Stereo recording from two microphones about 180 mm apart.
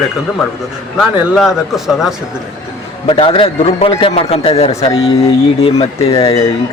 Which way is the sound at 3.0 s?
30° left (ahead or behind).